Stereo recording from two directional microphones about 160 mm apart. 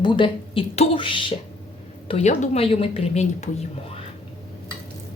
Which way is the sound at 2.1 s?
45° left (ahead or behind).